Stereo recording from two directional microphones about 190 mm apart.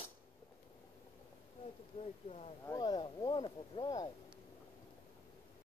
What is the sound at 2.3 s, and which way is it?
Speech, 35° left (ahead or behind).